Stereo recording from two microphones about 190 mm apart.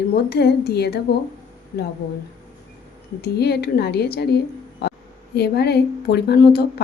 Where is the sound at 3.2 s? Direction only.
60° left (ahead or behind).